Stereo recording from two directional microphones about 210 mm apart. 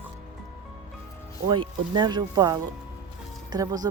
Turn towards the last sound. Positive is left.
turn(degrees=-15)  # may be behind; listen again after turning